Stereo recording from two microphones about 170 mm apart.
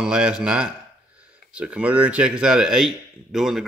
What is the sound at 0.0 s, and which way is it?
Speech, 5° right (ahead or behind).